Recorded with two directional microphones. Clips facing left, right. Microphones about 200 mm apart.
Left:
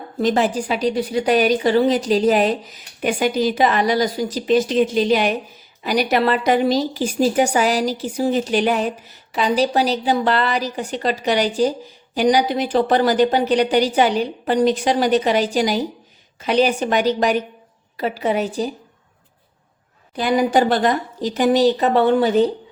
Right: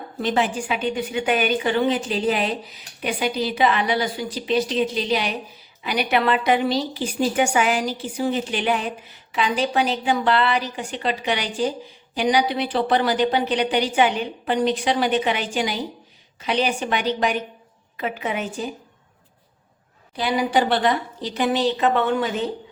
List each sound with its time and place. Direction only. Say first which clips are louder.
0.2 s a woman's voice: left 4 dB; 40° left (ahead or behind)
20.1 s a woman's voice: left 4 dB; 45° left (ahead or behind)